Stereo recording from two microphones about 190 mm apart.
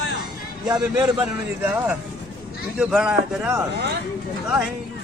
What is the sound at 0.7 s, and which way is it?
A man's voice, 10° right (ahead or behind).